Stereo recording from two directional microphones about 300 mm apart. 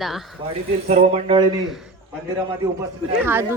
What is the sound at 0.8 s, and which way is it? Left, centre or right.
Speech, right.